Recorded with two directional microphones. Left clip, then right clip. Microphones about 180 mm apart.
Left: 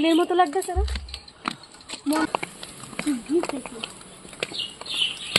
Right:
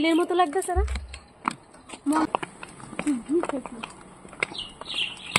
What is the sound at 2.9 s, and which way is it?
Speech, 15° left (ahead or behind).